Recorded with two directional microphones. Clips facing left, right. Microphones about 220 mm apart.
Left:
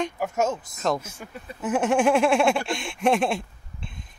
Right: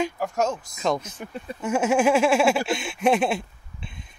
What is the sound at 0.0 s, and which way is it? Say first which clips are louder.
Speech: right 1 dB; 5° left (ahead or behind).